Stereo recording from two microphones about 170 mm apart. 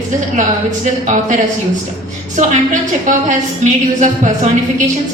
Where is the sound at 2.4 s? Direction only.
50° right (ahead or behind).